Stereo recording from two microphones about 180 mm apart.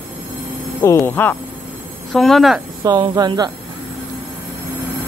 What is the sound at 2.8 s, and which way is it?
Speech, 25° right (ahead or behind).